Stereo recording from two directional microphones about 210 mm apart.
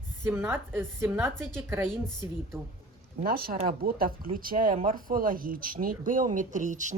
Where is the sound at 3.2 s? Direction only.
45° right (ahead or behind).